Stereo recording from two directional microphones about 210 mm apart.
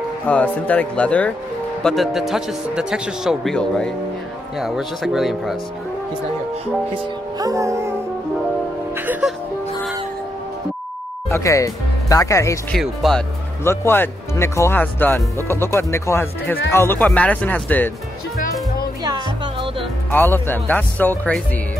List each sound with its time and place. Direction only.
0.3 s speech: 5° left (ahead or behind)
6.9 s speech: 15° right (ahead or behind)
8.9 s speech: 10° right (ahead or behind)
11.2 s speech: 15° left (ahead or behind)
12.7 s speech: centre (ahead or behind)
13.7 s speech: 10° left (ahead or behind)
19.0 s music: 20° right (ahead or behind)
20.1 s speech: 10° left (ahead or behind)